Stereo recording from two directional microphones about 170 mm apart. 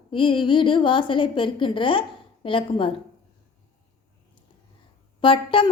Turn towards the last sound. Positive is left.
turn(degrees=30)  # may be behind; listen again after turning